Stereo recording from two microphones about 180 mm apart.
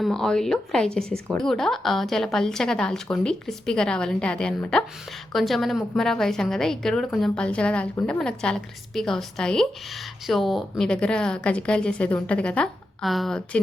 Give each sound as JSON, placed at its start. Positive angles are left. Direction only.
{"t": 0.0, "sound": "a woman's voice", "side_deg": 5}